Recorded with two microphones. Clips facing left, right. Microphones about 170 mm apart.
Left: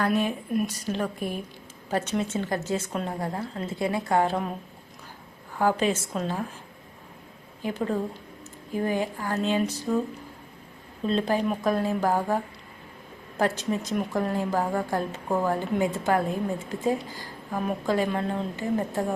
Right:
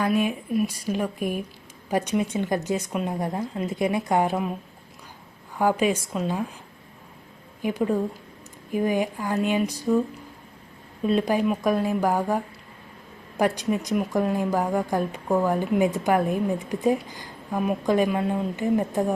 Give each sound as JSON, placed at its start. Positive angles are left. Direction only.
{"t": 0.0, "sound": "speech", "side_deg": -10}
{"t": 5.5, "sound": "speech", "side_deg": -15}
{"t": 7.6, "sound": "speech", "side_deg": -15}
{"t": 11.0, "sound": "speech", "side_deg": -10}